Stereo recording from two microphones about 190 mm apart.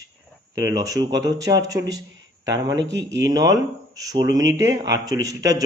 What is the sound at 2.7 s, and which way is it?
Speech, 70° right (ahead or behind).